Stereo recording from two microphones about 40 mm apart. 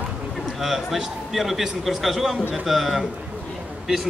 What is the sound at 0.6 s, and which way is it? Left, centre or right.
A man's voice, centre.